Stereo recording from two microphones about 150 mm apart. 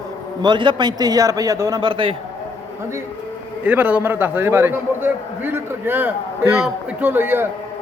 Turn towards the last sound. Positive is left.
turn(degrees=-15)  # may be behind; listen again after turning